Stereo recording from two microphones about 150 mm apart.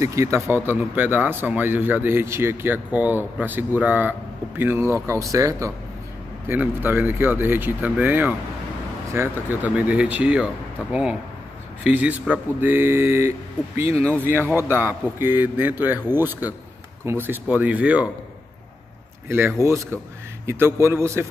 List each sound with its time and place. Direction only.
0.0 s speech: 20° right (ahead or behind)
19.2 s speech: 15° right (ahead or behind)